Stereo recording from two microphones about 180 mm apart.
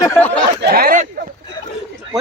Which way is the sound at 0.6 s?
55° right (ahead or behind).